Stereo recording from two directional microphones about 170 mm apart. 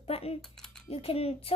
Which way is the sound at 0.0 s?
35° left (ahead or behind).